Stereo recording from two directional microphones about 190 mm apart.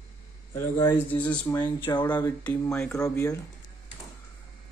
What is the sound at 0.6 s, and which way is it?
Speech, 10° left (ahead or behind).